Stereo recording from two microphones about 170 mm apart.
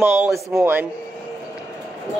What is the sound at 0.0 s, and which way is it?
Speech, 15° right (ahead or behind).